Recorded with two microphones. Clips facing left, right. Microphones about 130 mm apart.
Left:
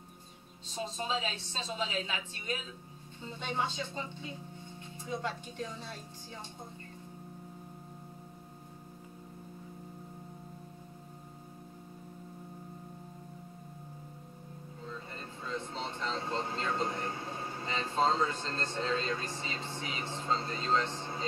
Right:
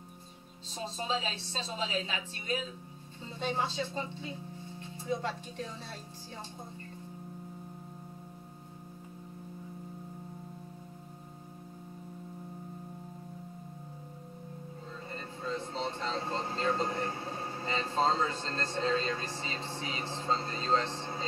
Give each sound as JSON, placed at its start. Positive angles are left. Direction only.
{"t": 0.8, "sound": "speech", "side_deg": -30}
{"t": 15.4, "sound": "music", "side_deg": -35}